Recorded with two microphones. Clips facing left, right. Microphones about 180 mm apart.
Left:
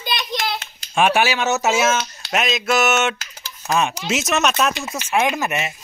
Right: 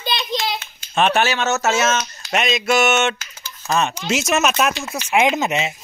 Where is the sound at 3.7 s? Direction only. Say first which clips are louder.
Even; 10° left (ahead or behind).